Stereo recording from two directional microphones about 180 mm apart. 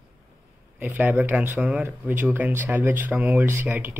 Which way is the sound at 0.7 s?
10° right (ahead or behind).